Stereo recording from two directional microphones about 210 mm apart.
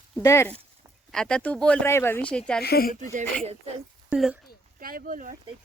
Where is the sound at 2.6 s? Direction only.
45° left (ahead or behind).